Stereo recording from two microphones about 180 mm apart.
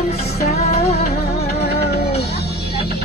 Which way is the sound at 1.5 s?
60° left (ahead or behind).